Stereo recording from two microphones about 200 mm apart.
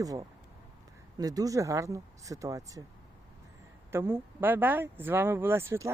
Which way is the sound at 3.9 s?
10° right (ahead or behind).